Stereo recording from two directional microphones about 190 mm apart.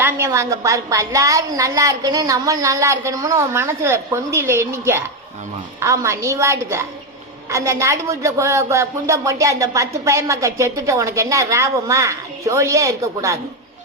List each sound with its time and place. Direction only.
0.0 s speech: 15° right (ahead or behind)